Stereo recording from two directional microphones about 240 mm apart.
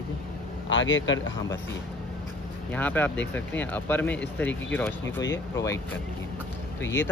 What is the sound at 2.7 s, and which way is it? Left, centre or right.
Speech, centre.